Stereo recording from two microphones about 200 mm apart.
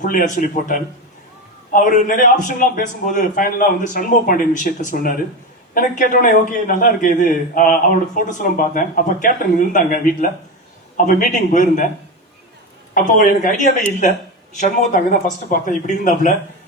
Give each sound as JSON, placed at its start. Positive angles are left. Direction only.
{"t": 0.0, "sound": "a man's voice", "side_deg": 40}
{"t": 12.9, "sound": "a man's voice", "side_deg": 40}